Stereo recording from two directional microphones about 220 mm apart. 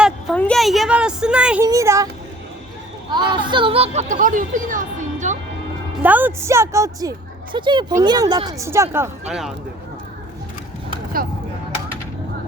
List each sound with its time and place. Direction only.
0.0 s a sound: centre (ahead or behind)
1.6 s a woman's voice: 15° right (ahead or behind)
3.2 s speech: 20° right (ahead or behind)
6.0 s a woman's voice: 5° right (ahead or behind)